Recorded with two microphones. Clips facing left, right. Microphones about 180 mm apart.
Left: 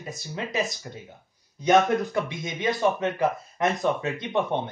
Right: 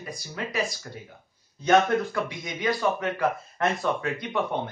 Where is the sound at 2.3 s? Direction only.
25° left (ahead or behind).